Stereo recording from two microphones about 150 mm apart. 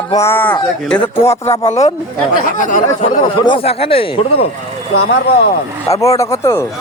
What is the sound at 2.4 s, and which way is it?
Speech, 60° left (ahead or behind).